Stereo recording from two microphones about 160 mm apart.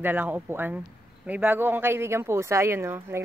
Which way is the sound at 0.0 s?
10° right (ahead or behind).